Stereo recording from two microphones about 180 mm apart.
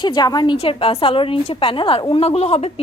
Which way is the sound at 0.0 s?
25° left (ahead or behind).